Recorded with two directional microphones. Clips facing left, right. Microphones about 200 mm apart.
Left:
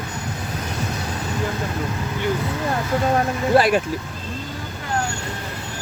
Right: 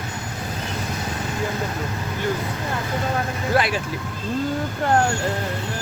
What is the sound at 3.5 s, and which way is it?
Speech, 25° left (ahead or behind).